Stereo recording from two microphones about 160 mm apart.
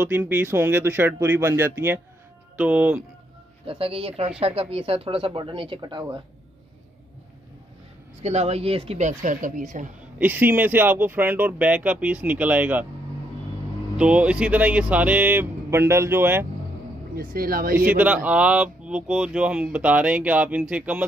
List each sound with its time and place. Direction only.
0.0 s speech: 10° right (ahead or behind)
3.6 s speech: 35° right (ahead or behind)
8.2 s speech: 45° right (ahead or behind)
10.1 s speech: 10° right (ahead or behind)
13.9 s speech: 10° right (ahead or behind)
17.1 s speech: 65° right (ahead or behind)
17.7 s speech: 10° right (ahead or behind)